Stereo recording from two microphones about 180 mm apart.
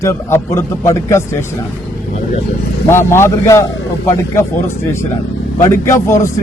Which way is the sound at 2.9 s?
15° left (ahead or behind).